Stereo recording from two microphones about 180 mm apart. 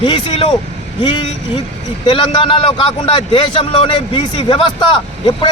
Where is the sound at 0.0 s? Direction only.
30° left (ahead or behind).